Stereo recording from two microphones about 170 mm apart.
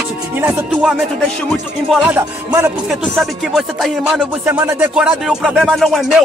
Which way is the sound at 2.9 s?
Centre (ahead or behind).